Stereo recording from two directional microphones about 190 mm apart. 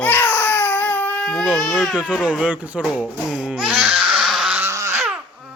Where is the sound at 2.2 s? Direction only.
5° right (ahead or behind).